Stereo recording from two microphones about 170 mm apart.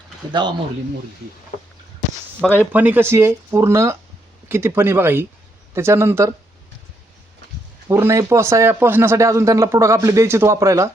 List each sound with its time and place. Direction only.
0.4 s speech: 25° right (ahead or behind)
2.6 s a man's voice: 10° right (ahead or behind)
7.9 s a man's voice: 15° right (ahead or behind)